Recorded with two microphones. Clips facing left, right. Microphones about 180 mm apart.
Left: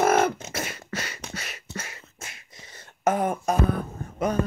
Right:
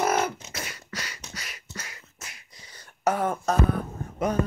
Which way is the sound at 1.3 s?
25° left (ahead or behind).